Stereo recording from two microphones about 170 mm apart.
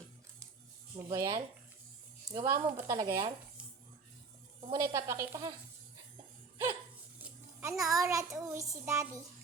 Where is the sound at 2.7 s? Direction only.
15° right (ahead or behind).